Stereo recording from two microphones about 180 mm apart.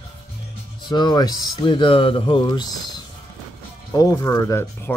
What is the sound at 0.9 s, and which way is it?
Speech, 25° left (ahead or behind).